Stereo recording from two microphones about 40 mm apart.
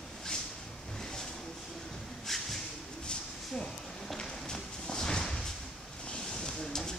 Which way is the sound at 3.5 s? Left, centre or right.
Centre.